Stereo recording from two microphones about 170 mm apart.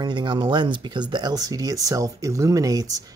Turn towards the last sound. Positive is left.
turn(degrees=-20)  # may be behind; listen again after turning